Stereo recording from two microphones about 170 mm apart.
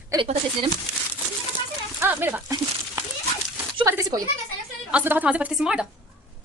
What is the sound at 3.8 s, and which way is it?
A woman's voice, 15° right (ahead or behind).